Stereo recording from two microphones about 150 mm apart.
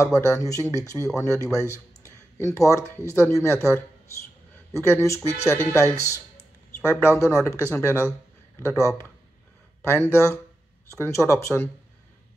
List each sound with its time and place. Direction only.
0.0 s speech: 20° left (ahead or behind)
1.7 s a sound: 20° left (ahead or behind)
3.1 s speech: 20° left (ahead or behind)
7.1 s speech: 20° left (ahead or behind)